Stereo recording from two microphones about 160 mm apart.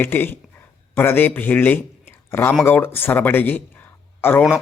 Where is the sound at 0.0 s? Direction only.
10° left (ahead or behind).